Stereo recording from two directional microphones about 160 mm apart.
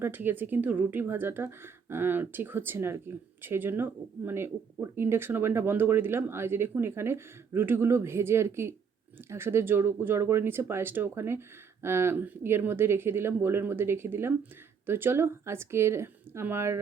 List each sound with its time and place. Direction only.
0.0 s speech: 10° right (ahead or behind)